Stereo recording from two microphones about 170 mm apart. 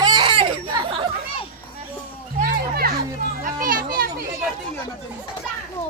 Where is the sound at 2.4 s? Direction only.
60° right (ahead or behind).